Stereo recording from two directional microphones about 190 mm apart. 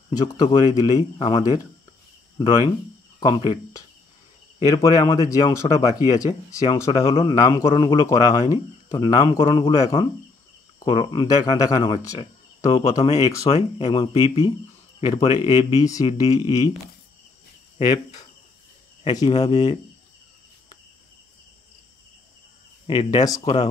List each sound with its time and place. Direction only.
0.2 s speech: 20° left (ahead or behind)
4.8 s speech: 20° left (ahead or behind)
6.9 s speech: 30° left (ahead or behind)
7.3 s speech: 20° left (ahead or behind)
17.7 s speech: 25° left (ahead or behind)
22.8 s speech: 25° left (ahead or behind)